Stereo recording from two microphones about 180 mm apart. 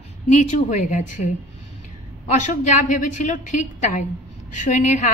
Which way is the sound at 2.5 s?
40° left (ahead or behind).